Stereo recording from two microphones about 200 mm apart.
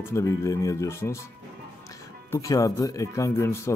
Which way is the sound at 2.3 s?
15° left (ahead or behind).